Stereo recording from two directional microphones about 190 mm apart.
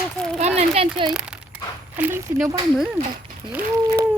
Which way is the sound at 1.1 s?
5° right (ahead or behind).